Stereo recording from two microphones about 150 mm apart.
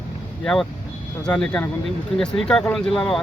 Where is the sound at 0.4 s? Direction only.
5° left (ahead or behind).